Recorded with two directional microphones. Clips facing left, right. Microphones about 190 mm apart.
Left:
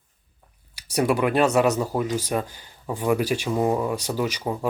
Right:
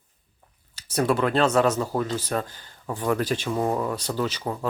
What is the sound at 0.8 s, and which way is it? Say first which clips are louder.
Speech: left 1 dB; 10° left (ahead or behind).